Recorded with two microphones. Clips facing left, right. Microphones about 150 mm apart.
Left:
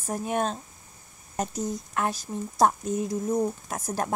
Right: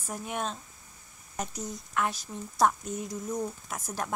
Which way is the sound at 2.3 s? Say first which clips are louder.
Left 4 dB; 40° left (ahead or behind).